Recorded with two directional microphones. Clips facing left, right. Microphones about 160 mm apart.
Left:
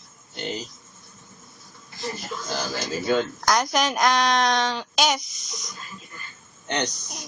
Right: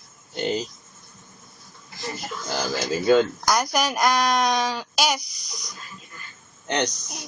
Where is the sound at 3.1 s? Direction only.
5° right (ahead or behind).